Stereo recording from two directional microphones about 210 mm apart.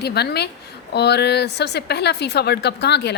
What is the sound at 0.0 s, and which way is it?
A woman's voice, 50° left (ahead or behind).